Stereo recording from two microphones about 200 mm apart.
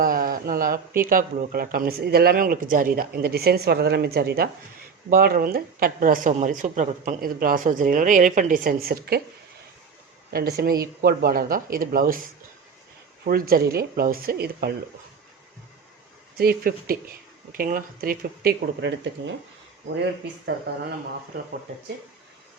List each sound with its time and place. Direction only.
0.0 s speech: 45° right (ahead or behind)
10.3 s speech: 50° right (ahead or behind)
13.2 s speech: 50° right (ahead or behind)
16.4 s speech: 50° right (ahead or behind)